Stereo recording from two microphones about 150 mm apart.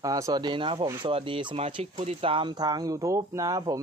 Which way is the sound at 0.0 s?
25° right (ahead or behind).